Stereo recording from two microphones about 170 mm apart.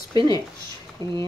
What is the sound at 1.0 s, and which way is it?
Speech, 20° left (ahead or behind).